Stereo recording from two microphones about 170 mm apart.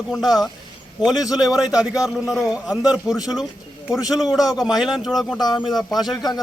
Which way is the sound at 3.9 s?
20° left (ahead or behind).